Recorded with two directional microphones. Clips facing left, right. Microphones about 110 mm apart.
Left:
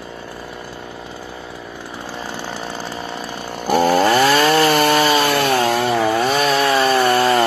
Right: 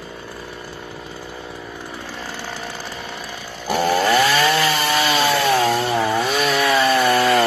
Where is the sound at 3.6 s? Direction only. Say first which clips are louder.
Left 4 dB; 45° left (ahead or behind).